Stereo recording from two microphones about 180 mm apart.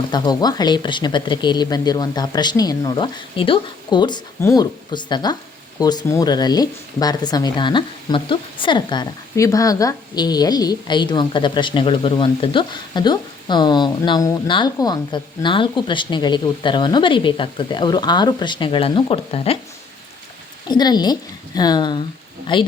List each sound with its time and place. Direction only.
0.1 s speech: 25° left (ahead or behind)
20.7 s speech: 25° left (ahead or behind)